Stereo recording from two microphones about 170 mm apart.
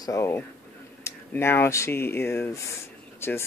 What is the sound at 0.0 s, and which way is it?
Speech, 15° left (ahead or behind).